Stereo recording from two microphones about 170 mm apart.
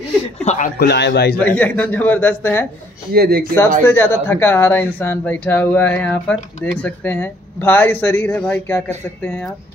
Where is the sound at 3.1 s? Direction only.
65° right (ahead or behind).